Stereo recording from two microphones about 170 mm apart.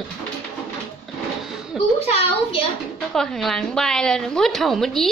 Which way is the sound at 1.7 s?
Centre (ahead or behind).